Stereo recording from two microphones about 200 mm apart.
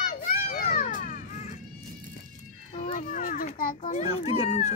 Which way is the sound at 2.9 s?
45° left (ahead or behind).